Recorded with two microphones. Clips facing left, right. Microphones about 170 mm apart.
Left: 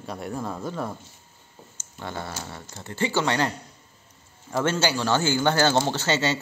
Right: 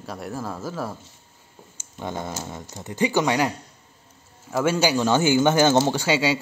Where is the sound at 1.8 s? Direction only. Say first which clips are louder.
Right 3 dB; 15° right (ahead or behind).